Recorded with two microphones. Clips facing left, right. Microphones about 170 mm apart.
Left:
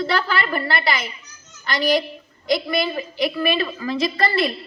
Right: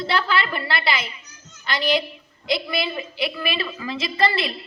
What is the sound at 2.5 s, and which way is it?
A woman's voice, 45° left (ahead or behind).